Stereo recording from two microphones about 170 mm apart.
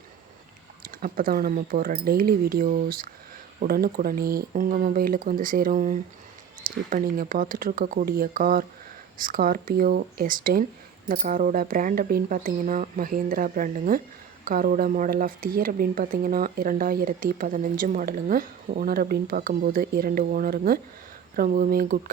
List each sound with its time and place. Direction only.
0.9 s speech: 55° right (ahead or behind)